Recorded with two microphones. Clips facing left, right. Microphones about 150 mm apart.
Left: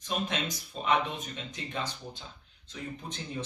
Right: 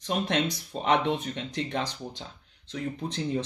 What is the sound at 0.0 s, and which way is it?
Speech, 70° right (ahead or behind).